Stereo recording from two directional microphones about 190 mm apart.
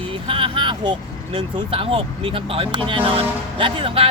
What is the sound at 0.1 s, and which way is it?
Speech, 25° right (ahead or behind).